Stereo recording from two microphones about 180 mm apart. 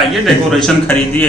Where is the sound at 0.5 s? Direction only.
5° left (ahead or behind).